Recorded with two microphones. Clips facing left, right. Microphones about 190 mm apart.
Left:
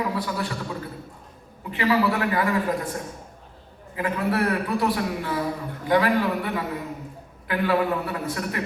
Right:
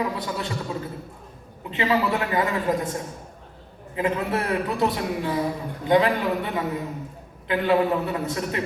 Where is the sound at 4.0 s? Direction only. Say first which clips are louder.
Even; 25° right (ahead or behind).